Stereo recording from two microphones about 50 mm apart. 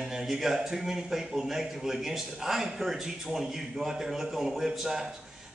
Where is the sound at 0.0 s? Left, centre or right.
Centre.